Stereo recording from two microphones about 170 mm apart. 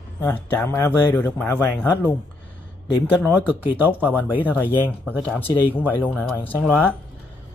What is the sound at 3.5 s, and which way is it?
Speech, 10° right (ahead or behind).